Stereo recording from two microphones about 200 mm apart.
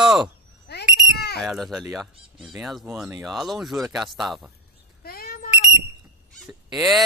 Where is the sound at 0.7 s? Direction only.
55° left (ahead or behind).